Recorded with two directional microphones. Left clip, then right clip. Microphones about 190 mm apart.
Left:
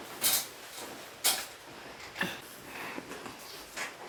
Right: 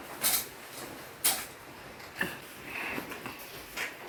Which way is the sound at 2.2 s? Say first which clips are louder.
Even; centre (ahead or behind).